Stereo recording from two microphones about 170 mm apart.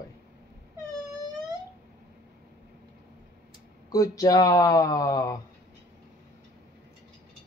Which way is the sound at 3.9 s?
20° left (ahead or behind).